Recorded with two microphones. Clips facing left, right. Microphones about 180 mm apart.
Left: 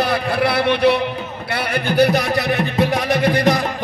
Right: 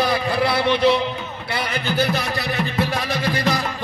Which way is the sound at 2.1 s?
15° left (ahead or behind).